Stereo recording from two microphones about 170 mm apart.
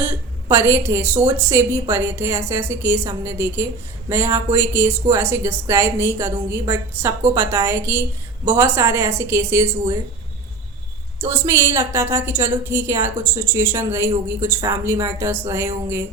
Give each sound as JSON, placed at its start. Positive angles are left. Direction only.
{"t": 0.0, "sound": "a woman's voice", "side_deg": -15}
{"t": 11.2, "sound": "a woman's voice", "side_deg": -15}